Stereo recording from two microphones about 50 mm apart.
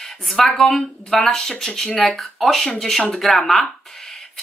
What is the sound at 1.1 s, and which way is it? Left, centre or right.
Speech, centre.